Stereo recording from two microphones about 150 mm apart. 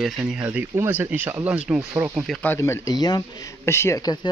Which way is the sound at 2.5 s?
20° left (ahead or behind).